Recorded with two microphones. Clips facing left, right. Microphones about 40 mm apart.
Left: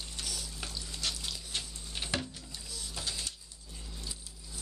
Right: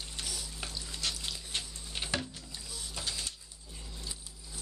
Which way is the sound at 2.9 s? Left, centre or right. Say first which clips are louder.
Right 1 dB; centre.